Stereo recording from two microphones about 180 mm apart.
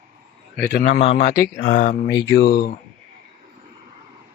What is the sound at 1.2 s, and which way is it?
Speech, 65° left (ahead or behind).